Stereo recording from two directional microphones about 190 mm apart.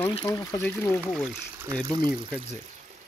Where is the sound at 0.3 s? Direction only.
20° left (ahead or behind).